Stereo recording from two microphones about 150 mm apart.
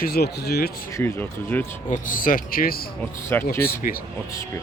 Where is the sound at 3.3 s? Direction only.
15° left (ahead or behind).